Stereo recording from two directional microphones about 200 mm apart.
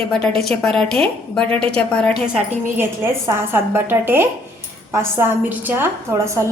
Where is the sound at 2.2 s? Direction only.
5° right (ahead or behind).